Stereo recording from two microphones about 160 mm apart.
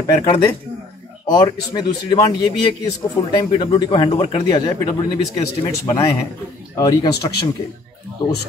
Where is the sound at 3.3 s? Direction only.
30° left (ahead or behind).